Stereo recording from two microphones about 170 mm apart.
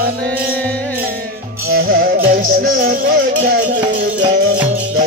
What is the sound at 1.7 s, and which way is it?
Music, 60° right (ahead or behind).